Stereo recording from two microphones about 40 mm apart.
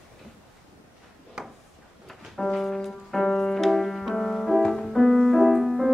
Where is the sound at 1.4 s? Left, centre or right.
Centre.